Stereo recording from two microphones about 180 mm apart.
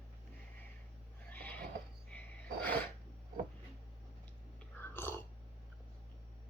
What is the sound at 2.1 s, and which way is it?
Wild animals, 10° left (ahead or behind).